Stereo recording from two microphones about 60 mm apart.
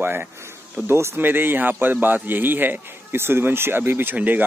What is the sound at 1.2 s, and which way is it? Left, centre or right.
A man's voice, right.